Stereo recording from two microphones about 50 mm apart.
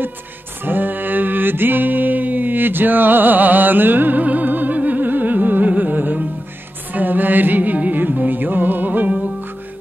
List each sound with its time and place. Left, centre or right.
0.7 s mantra: right
6.9 s music: right